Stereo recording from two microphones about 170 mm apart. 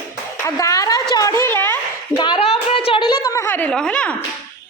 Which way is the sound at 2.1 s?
30° left (ahead or behind).